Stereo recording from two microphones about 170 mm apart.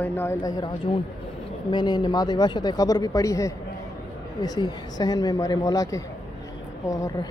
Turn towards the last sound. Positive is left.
turn(degrees=20)  # may be behind; listen again after turning